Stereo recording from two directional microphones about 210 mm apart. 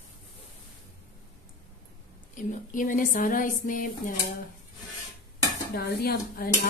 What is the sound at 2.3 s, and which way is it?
Speech, 40° left (ahead or behind).